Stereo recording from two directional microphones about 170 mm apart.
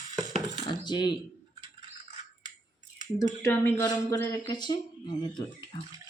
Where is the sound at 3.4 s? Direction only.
15° left (ahead or behind).